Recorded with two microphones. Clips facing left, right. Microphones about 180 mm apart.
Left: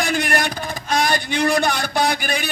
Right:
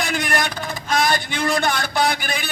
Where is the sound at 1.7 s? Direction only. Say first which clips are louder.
Even; 15° left (ahead or behind).